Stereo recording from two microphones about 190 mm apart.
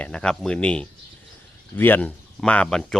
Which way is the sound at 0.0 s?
5° left (ahead or behind).